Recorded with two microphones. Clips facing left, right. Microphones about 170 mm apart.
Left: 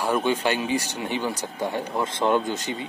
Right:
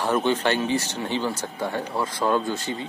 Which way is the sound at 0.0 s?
10° left (ahead or behind).